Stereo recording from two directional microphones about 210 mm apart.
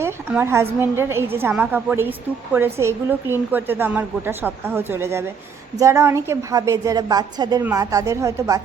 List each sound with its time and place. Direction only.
0.0 s a woman's voice: 10° right (ahead or behind)